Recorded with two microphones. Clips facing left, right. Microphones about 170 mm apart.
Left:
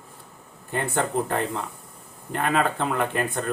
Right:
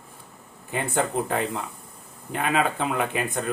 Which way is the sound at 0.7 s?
5° right (ahead or behind).